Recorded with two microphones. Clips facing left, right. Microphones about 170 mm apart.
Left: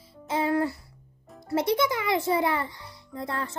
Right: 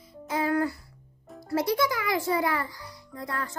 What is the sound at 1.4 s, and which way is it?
A child's voice, 25° left (ahead or behind).